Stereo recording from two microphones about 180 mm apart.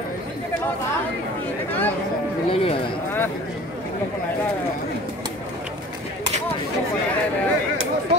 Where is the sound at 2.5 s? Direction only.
30° left (ahead or behind).